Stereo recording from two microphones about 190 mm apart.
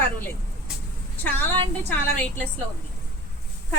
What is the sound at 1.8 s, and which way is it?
Speech, 10° left (ahead or behind).